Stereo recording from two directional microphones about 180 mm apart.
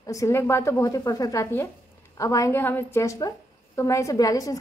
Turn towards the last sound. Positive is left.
turn(degrees=20)  # may be behind; listen again after turning